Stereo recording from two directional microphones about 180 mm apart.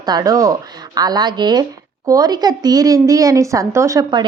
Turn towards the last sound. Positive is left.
turn(degrees=-20)  # may be behind; listen again after turning